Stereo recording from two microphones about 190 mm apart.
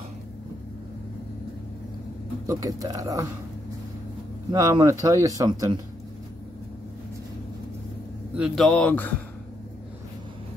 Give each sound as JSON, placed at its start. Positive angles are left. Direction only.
{"t": 2.4, "sound": "speech", "side_deg": -15}
{"t": 4.5, "sound": "speech", "side_deg": -15}
{"t": 8.4, "sound": "a man's voice", "side_deg": 0}